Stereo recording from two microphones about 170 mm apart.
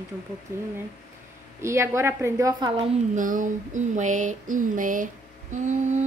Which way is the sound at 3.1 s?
50° right (ahead or behind).